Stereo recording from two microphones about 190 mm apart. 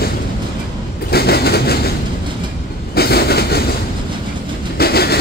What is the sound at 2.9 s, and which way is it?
Train, 55° left (ahead or behind).